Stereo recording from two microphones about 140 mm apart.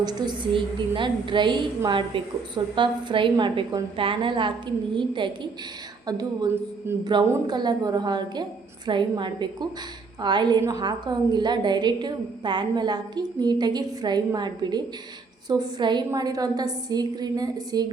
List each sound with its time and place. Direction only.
0.0 s a woman's voice: 30° right (ahead or behind)